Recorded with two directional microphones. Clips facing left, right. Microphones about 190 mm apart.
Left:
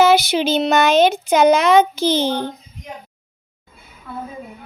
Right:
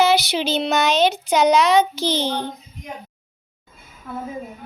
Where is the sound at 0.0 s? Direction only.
50° left (ahead or behind).